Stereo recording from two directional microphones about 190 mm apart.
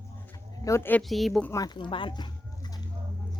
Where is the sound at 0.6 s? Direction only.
15° left (ahead or behind).